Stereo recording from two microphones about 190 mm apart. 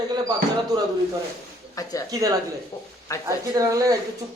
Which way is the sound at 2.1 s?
20° right (ahead or behind).